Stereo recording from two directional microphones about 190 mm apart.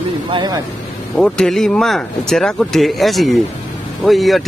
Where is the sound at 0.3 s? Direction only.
25° right (ahead or behind).